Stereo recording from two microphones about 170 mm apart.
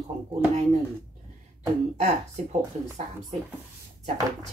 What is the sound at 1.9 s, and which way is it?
Speech, 40° right (ahead or behind).